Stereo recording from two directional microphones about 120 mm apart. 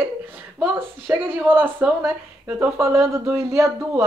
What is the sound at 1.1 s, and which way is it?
Speech, 10° right (ahead or behind).